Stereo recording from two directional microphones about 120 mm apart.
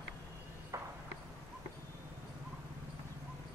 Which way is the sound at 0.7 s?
25° right (ahead or behind).